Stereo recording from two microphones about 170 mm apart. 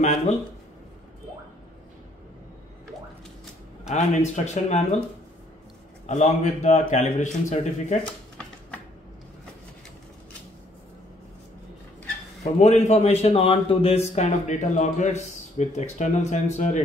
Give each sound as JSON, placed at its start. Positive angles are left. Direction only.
{"t": 0.0, "sound": "a man's voice", "side_deg": 45}
{"t": 3.9, "sound": "speech", "side_deg": 40}
{"t": 6.0, "sound": "a man's voice", "side_deg": 45}
{"t": 8.0, "sound": "a sound", "side_deg": 5}
{"t": 12.5, "sound": "a man's voice", "side_deg": 40}